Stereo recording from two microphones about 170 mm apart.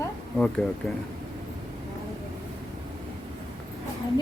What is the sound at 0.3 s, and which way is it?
Speech, 5° left (ahead or behind).